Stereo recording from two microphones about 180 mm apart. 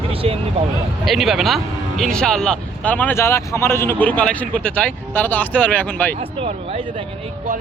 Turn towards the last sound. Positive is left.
turn(degrees=-30)  # may be behind; listen again after turning